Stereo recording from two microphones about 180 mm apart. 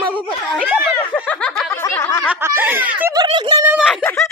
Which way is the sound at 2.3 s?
15° right (ahead or behind).